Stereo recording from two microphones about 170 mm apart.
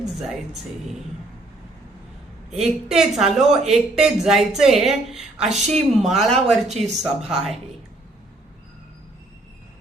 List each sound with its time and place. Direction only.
0.2 s speech: centre (ahead or behind)
2.6 s speech: centre (ahead or behind)
6.7 s speech: 40° right (ahead or behind)
7.3 s speech: centre (ahead or behind)